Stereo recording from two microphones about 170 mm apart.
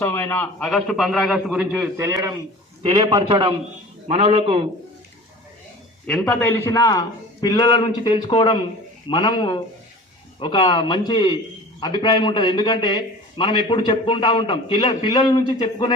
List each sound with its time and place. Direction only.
0.0 s a man's voice: 15° left (ahead or behind)
0.6 s a man's voice: centre (ahead or behind)
2.0 s a man's voice: 15° right (ahead or behind)
4.1 s a man's voice: 40° right (ahead or behind)
6.1 s a man's voice: 5° left (ahead or behind); by 15.9 s 25° left (ahead or behind)